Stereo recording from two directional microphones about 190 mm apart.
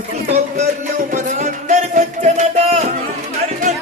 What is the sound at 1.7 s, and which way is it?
Music, 35° right (ahead or behind).